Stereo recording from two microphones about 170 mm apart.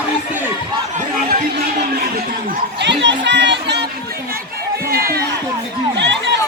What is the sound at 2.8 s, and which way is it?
Speech, 90° right.